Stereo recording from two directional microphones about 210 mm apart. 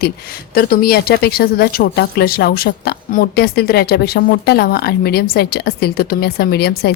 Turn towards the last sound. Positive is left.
turn(degrees=50)  # may be behind; listen again after turning